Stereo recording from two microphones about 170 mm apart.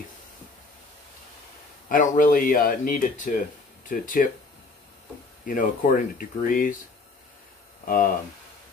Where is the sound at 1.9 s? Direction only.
55° left (ahead or behind).